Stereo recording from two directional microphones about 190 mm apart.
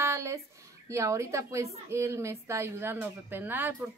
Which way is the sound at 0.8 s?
15° right (ahead or behind).